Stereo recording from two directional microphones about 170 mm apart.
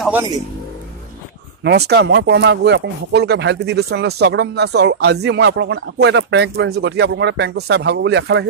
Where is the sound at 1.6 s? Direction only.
75° right (ahead or behind).